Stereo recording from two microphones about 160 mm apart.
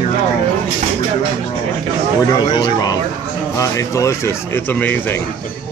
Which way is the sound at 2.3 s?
25° left (ahead or behind).